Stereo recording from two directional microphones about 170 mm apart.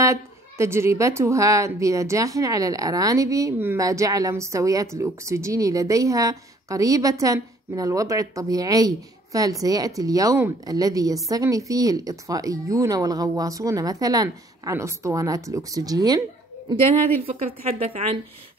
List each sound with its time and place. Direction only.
0.0 s a woman's voice: 15° right (ahead or behind)
16.6 s a woman's voice: 30° right (ahead or behind)